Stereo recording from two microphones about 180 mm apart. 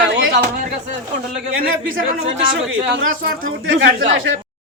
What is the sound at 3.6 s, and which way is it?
Speech, 90° right.